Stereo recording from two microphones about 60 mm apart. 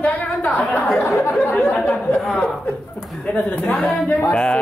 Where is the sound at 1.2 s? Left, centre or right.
Left.